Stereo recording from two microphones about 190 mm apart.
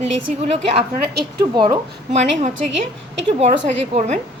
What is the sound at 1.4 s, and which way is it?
Speech, 20° right (ahead or behind).